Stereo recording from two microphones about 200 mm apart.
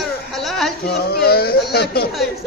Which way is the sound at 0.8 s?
50° left (ahead or behind).